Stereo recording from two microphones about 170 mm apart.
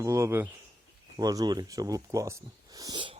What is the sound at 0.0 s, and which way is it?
Speech, 15° right (ahead or behind).